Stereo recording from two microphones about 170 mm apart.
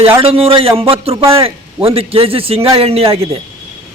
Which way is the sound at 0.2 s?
35° right (ahead or behind).